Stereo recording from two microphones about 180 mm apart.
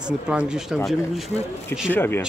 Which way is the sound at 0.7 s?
Centre (ahead or behind).